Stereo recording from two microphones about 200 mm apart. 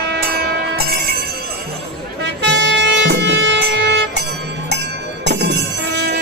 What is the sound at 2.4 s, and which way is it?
Music, 60° right (ahead or behind).